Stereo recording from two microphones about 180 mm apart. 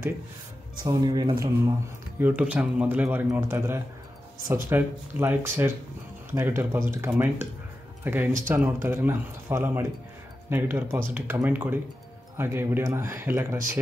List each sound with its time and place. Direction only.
0.7 s speech: 20° right (ahead or behind)
2.1 s speech: 10° right (ahead or behind)